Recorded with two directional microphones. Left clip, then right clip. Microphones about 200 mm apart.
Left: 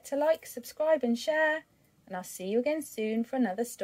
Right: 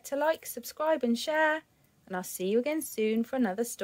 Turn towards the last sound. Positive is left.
turn(degrees=-30)  # may be behind; listen again after turning